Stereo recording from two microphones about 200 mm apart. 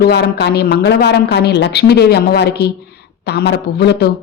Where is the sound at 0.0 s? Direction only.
55° left (ahead or behind).